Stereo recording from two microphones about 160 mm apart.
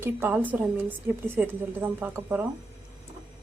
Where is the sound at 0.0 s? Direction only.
15° right (ahead or behind).